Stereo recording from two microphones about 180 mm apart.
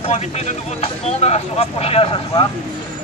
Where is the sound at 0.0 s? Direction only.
35° left (ahead or behind).